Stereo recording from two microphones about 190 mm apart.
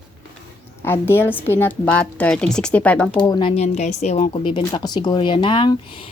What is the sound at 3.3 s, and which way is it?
Speech, 25° left (ahead or behind).